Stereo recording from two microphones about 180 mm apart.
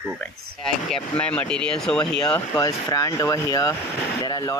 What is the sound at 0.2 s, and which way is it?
Speech, 5° left (ahead or behind).